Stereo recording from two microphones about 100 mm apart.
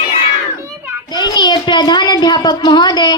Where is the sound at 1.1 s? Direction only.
45° left (ahead or behind).